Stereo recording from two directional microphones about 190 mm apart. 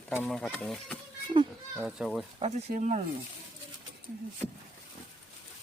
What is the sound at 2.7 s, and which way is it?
Speech, 40° right (ahead or behind).